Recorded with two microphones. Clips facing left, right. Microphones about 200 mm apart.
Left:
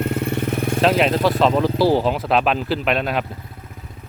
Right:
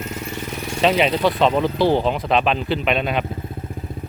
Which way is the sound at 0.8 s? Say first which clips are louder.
Even; centre (ahead or behind).